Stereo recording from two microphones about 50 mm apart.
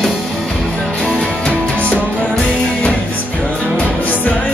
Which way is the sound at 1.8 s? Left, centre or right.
Left.